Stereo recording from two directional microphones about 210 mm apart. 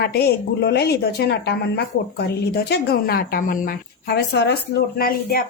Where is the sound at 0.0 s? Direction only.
50° left (ahead or behind).